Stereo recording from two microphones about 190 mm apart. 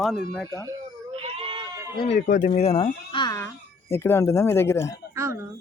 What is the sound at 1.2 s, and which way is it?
Goat, 30° right (ahead or behind).